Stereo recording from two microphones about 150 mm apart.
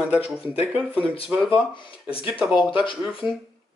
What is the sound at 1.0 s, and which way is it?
Speech, 40° left (ahead or behind).